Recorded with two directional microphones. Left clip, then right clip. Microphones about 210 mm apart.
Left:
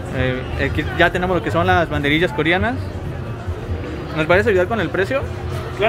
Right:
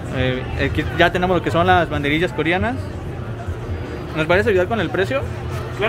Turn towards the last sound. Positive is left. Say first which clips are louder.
# left 1 dB
turn(degrees=-5)  # may be behind; listen again after turning